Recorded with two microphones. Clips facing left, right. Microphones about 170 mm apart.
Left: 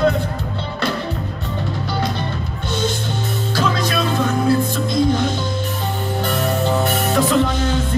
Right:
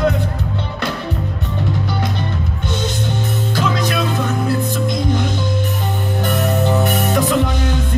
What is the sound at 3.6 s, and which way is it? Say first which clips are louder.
Music: even; 20° right (ahead or behind).